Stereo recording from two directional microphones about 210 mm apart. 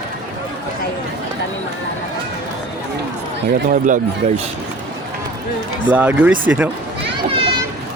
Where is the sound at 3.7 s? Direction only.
40° right (ahead or behind).